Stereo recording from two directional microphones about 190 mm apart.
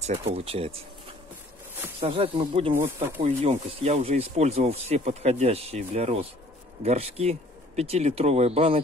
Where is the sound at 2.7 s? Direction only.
15° right (ahead or behind).